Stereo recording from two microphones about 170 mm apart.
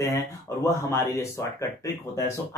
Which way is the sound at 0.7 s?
15° left (ahead or behind).